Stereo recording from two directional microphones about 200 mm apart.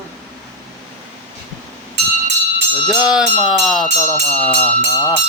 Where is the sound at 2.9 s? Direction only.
5° right (ahead or behind).